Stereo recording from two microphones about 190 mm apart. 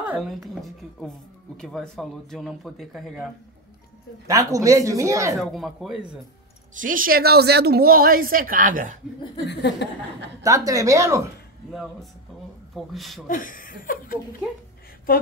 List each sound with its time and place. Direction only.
0.0 s speech: 5° right (ahead or behind)
4.3 s speech: 15° right (ahead or behind)
5.4 s speech: centre (ahead or behind)
6.8 s a woman's voice: 45° right (ahead or behind)
9.5 s speech: 65° left (ahead or behind)
10.4 s speech: 15° right (ahead or behind)
11.7 s speech: centre (ahead or behind)
13.3 s chuckle: 45° left (ahead or behind)